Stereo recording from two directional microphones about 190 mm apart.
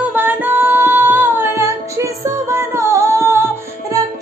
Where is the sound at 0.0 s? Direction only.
10° right (ahead or behind).